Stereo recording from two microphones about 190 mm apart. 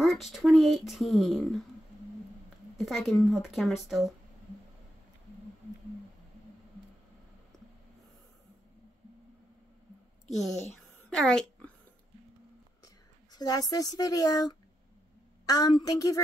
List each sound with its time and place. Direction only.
0.0 s speech: centre (ahead or behind)
2.8 s speech: centre (ahead or behind)
11.1 s speech: 5° left (ahead or behind)
12.8 s a woman's voice: 20° left (ahead or behind)